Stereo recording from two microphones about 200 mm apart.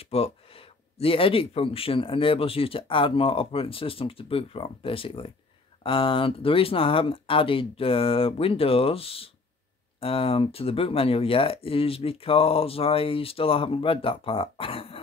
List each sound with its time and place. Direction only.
0.0 s speech: 30° left (ahead or behind)